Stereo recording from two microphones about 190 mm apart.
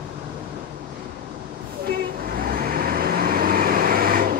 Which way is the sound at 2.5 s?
50° right (ahead or behind).